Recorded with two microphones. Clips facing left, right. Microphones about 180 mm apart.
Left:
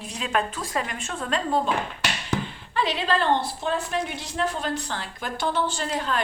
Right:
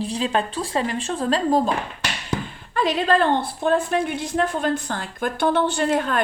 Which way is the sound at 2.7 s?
45° right (ahead or behind).